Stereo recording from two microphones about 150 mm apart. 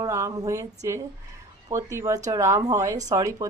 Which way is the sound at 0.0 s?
20° right (ahead or behind).